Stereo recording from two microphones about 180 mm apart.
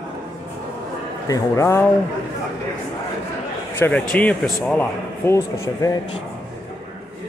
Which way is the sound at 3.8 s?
10° left (ahead or behind).